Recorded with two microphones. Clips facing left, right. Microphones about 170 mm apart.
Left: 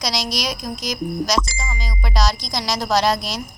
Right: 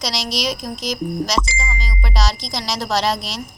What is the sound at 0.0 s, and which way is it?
A woman's voice, centre (ahead or behind).